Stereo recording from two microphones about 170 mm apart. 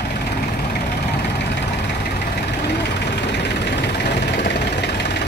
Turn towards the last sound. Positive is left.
turn(degrees=85)